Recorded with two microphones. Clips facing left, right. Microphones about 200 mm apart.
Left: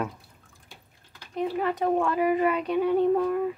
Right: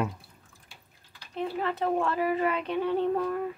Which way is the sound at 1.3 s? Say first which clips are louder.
Left 3 dB; 15° left (ahead or behind).